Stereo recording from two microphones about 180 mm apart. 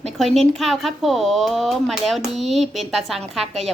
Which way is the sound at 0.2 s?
Centre (ahead or behind).